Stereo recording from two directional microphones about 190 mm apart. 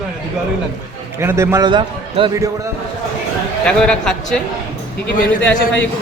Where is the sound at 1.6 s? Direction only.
25° right (ahead or behind).